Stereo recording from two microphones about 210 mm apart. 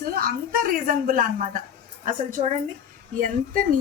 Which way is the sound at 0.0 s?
45° right (ahead or behind).